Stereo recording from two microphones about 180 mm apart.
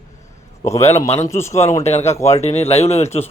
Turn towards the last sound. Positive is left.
turn(degrees=35)  # may be behind; listen again after turning